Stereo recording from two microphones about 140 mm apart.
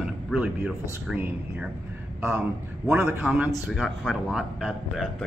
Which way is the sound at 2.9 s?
5° right (ahead or behind).